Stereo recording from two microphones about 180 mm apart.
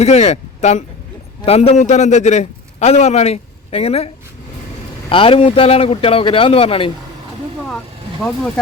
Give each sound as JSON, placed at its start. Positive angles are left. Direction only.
{"t": 0.0, "sound": "a man's voice", "side_deg": 35}